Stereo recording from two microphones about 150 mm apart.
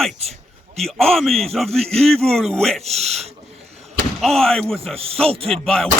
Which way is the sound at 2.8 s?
45° right (ahead or behind).